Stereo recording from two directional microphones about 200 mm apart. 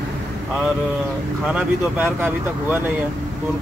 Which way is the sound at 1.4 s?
5° right (ahead or behind).